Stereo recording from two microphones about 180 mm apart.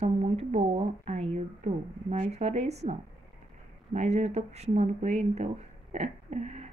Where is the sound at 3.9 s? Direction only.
40° right (ahead or behind).